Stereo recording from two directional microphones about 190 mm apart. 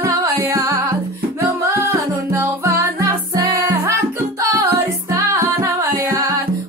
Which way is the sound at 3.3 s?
15° right (ahead or behind).